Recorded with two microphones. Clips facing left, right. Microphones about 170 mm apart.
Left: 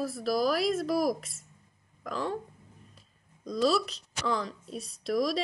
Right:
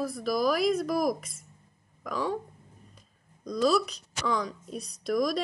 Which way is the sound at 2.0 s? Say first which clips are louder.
Right 2 dB; 5° right (ahead or behind).